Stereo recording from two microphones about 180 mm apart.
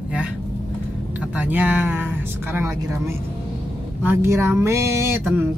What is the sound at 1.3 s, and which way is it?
Speech, 10° right (ahead or behind).